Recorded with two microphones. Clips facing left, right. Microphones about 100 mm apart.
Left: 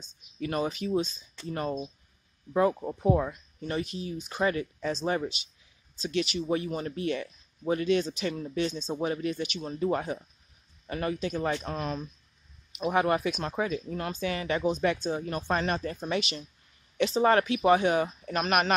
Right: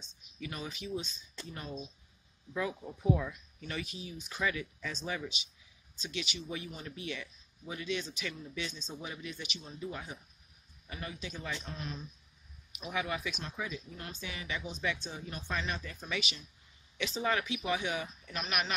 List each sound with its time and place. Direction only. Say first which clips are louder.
0.4 s speech: left 12 dB; 50° left (ahead or behind)
8.9 s speech: left 13 dB; 55° left (ahead or behind)
9.6 s speech: left 14 dB; 75° left (ahead or behind)
12.8 s speech: left 11 dB; 50° left (ahead or behind)